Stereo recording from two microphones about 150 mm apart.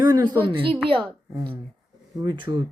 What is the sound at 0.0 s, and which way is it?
A woman's voice, 25° right (ahead or behind).